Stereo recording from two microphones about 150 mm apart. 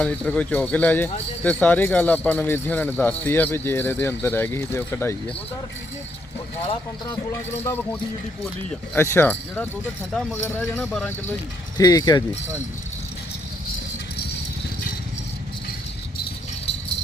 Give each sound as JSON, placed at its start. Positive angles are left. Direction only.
{"t": 0.0, "sound": "speech", "side_deg": 10}
{"t": 7.5, "sound": "speech", "side_deg": 15}
{"t": 11.8, "sound": "speech", "side_deg": 25}